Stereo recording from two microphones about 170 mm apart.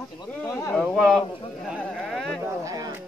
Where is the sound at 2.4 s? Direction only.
20° right (ahead or behind).